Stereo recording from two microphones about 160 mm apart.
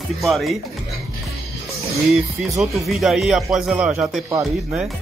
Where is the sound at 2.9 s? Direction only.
Centre (ahead or behind).